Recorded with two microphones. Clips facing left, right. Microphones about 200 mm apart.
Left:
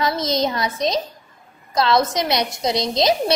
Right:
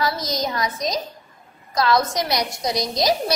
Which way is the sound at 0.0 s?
25° left (ahead or behind).